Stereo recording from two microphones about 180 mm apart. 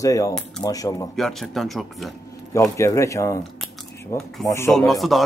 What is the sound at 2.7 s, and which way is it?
A man's voice, 15° left (ahead or behind).